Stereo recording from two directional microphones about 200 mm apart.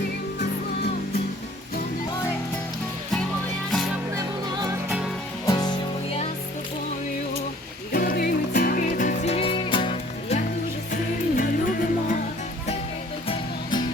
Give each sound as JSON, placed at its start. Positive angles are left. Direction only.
{"t": 3.7, "sound": "music", "side_deg": 0}
{"t": 4.1, "sound": "music", "side_deg": -20}
{"t": 5.5, "sound": "music", "side_deg": 20}
{"t": 7.9, "sound": "music", "side_deg": 50}
{"t": 10.9, "sound": "music", "side_deg": 45}
{"t": 13.2, "sound": "music", "side_deg": 25}